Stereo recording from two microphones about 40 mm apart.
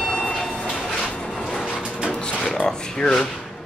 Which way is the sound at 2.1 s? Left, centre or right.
Left.